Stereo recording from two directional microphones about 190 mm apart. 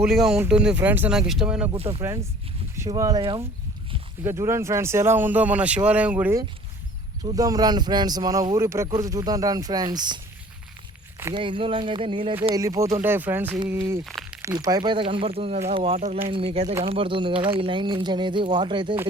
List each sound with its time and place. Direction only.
0.0 s speech: centre (ahead or behind)
1.7 s speech: 30° right (ahead or behind)
2.7 s speech: 15° right (ahead or behind)
11.3 s speech: 25° right (ahead or behind)
12.5 s speech: 15° right (ahead or behind)
14.0 s a sound: centre (ahead or behind)
14.4 s speech: 20° right (ahead or behind)
16.0 s speech: 40° right (ahead or behind)
16.3 s speech: 30° right (ahead or behind)